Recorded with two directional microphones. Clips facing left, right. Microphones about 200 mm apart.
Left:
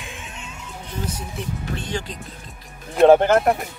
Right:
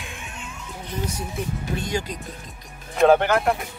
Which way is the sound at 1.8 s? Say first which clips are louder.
Right 2 dB; 10° right (ahead or behind).